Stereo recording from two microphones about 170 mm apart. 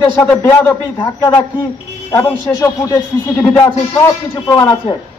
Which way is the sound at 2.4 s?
15° left (ahead or behind).